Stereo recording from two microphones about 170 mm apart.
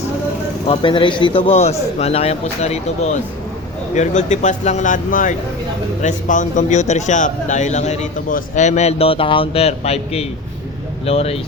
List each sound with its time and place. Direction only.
0.7 s a man's voice: 30° left (ahead or behind)